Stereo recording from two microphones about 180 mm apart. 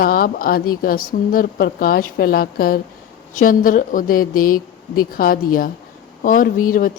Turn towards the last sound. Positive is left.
turn(degrees=50)  # may be behind; listen again after turning